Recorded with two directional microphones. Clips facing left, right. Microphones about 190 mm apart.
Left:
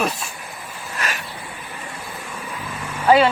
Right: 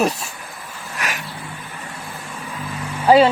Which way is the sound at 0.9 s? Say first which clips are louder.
Even; 15° right (ahead or behind).